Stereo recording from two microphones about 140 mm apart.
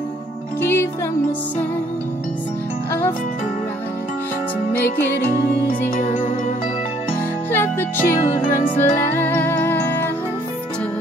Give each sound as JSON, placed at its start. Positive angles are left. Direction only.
{"t": 0.6, "sound": "music", "side_deg": 15}
{"t": 5.7, "sound": "music", "side_deg": 65}
{"t": 7.5, "sound": "music", "side_deg": 15}